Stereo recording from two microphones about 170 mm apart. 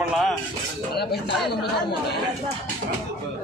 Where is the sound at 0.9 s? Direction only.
70° left (ahead or behind).